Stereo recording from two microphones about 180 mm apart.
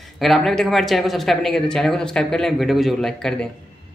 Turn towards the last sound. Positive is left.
turn(degrees=5)  # may be behind; listen again after turning